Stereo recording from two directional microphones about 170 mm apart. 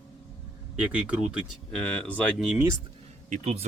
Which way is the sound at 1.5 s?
5° left (ahead or behind).